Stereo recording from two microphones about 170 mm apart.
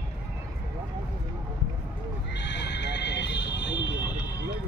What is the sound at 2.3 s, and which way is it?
Neigh, 90° left.